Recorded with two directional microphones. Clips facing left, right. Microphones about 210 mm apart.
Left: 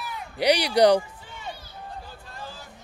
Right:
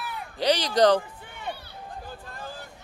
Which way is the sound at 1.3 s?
60° right (ahead or behind).